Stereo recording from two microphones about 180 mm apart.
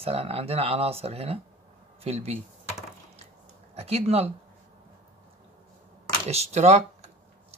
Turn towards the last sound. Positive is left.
turn(degrees=-35)  # may be behind; listen again after turning